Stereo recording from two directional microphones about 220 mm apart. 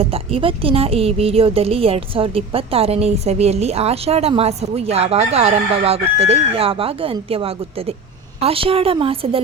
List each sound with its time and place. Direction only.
0.0 s a woman's voice: 25° right (ahead or behind)